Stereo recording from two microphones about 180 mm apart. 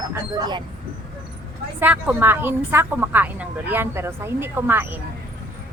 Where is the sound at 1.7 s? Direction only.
10° right (ahead or behind).